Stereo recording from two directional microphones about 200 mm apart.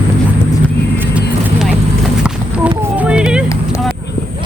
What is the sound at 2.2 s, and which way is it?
Clip-clop, 5° right (ahead or behind).